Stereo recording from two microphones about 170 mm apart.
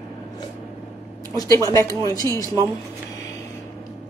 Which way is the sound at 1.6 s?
20° left (ahead or behind).